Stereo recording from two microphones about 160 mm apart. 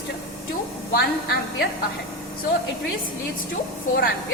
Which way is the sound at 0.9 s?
90° left.